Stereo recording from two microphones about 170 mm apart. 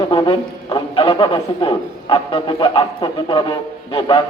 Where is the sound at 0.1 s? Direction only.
25° left (ahead or behind).